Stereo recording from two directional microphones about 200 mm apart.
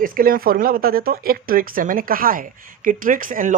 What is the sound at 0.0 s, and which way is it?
Speech, 45° right (ahead or behind).